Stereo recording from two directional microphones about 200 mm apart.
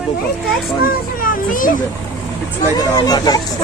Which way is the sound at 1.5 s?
40° left (ahead or behind).